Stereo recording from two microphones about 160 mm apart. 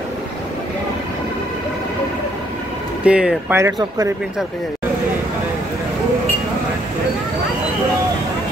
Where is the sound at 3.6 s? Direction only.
25° right (ahead or behind).